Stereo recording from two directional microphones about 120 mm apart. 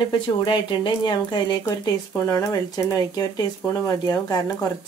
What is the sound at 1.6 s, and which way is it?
Speech, 25° left (ahead or behind).